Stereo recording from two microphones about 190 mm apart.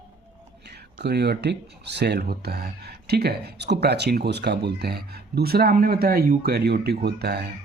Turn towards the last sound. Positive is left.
turn(degrees=-60)  # may be behind; listen again after turning